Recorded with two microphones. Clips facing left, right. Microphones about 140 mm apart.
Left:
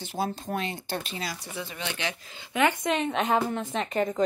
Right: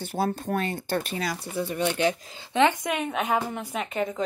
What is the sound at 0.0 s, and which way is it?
Speech, 55° right (ahead or behind).